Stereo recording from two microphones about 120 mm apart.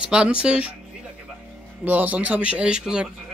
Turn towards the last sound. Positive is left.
turn(degrees=-5)  # may be behind; listen again after turning